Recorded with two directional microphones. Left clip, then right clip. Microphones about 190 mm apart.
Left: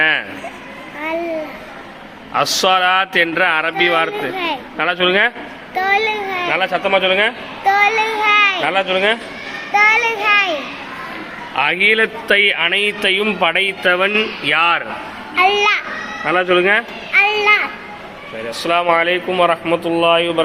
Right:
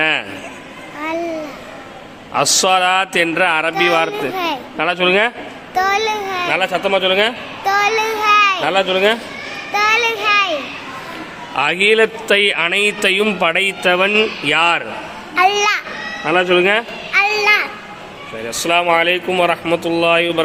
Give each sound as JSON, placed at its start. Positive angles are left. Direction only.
{"t": 0.0, "sound": "speech", "side_deg": -20}
{"t": 2.3, "sound": "speech", "side_deg": -20}
{"t": 5.7, "sound": "a sound", "side_deg": -10}
{"t": 6.5, "sound": "speech", "side_deg": -30}
{"t": 7.6, "sound": "a child's voice", "side_deg": -5}
{"t": 8.6, "sound": "speech", "side_deg": -30}
{"t": 9.7, "sound": "a child's voice", "side_deg": 0}
{"t": 11.5, "sound": "a man's voice", "side_deg": -35}
{"t": 15.4, "sound": "a sound", "side_deg": -25}
{"t": 16.2, "sound": "children playing", "side_deg": -15}
{"t": 18.5, "sound": "speech", "side_deg": -25}